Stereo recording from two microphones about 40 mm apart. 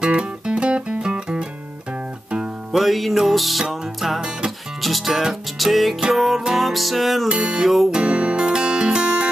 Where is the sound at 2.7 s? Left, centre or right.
Centre.